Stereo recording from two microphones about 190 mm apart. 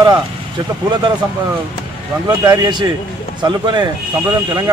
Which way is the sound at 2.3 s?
20° right (ahead or behind).